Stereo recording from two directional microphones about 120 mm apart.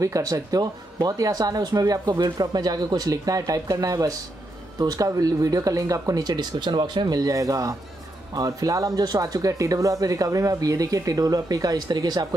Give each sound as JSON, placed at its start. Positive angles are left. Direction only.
{"t": 0.0, "sound": "speech", "side_deg": -30}